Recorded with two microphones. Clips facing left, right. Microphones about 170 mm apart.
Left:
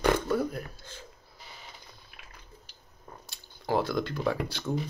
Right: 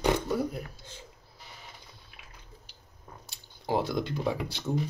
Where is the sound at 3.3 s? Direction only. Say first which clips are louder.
Left 1 dB; 20° right (ahead or behind).